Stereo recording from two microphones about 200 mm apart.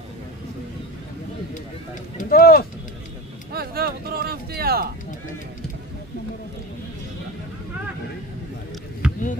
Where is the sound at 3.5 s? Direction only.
50° right (ahead or behind).